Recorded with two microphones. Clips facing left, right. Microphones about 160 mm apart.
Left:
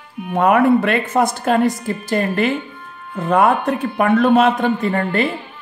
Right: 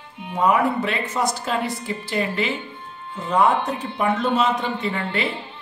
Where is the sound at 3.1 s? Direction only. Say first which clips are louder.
Left 4 dB; 60° left (ahead or behind); by 5.3 s 45° left (ahead or behind).